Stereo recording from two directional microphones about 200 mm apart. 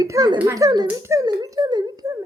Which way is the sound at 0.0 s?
20° right (ahead or behind).